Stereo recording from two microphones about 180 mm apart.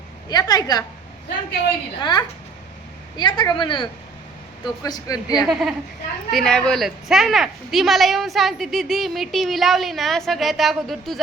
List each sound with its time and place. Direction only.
0.3 s speech: 20° left (ahead or behind)
2.0 s speech: 25° left (ahead or behind)
5.5 s a woman's voice: centre (ahead or behind)